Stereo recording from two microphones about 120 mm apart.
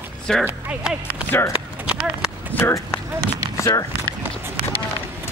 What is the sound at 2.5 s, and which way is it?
Speech, 20° left (ahead or behind).